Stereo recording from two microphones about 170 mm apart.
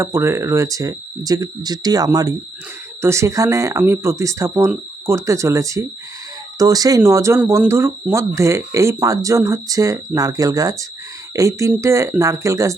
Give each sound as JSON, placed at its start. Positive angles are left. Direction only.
{"t": 0.0, "sound": "speech", "side_deg": -15}